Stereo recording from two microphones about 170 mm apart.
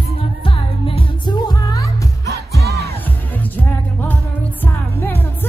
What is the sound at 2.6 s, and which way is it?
Music, 70° right (ahead or behind).